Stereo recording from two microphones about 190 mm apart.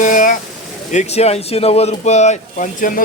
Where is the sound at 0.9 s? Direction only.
35° left (ahead or behind).